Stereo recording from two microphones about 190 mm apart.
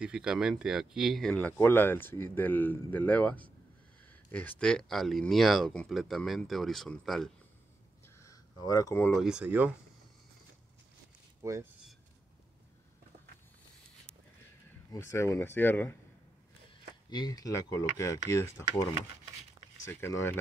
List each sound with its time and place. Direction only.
0.0 s speech: 5° right (ahead or behind)
8.2 s speech: 20° left (ahead or behind)
9.2 s speech: 5° right (ahead or behind)
11.4 s speech: 15° right (ahead or behind)
14.9 s speech: 15° left (ahead or behind)
17.1 s speech: 20° left (ahead or behind)